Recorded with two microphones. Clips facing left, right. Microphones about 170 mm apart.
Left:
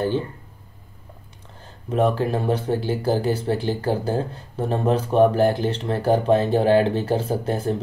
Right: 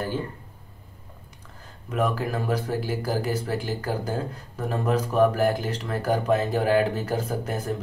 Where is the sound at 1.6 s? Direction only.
30° left (ahead or behind).